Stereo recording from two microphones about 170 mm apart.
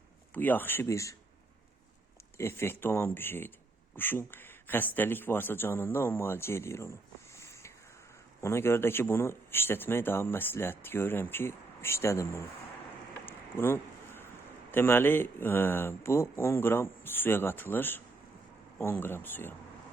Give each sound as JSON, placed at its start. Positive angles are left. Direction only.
{"t": 0.3, "sound": "speech", "side_deg": 10}
{"t": 2.4, "sound": "speech", "side_deg": 15}
{"t": 7.3, "sound": "a sound", "side_deg": 15}
{"t": 8.4, "sound": "speech", "side_deg": 15}
{"t": 13.2, "sound": "a sound", "side_deg": 15}
{"t": 14.7, "sound": "speech", "side_deg": 10}